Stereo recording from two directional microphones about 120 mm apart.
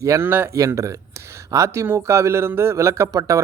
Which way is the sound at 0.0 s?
20° right (ahead or behind).